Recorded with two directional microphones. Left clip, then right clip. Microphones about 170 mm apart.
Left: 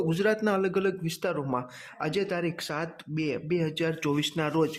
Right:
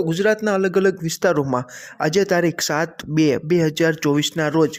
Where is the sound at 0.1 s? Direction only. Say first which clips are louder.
Right 8 dB; 25° right (ahead or behind); by 4.1 s 45° right (ahead or behind).